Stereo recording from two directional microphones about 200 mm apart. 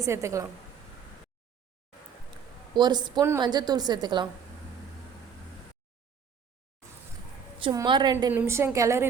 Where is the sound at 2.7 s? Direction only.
20° right (ahead or behind).